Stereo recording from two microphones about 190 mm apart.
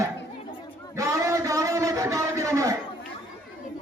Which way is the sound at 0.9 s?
15° right (ahead or behind).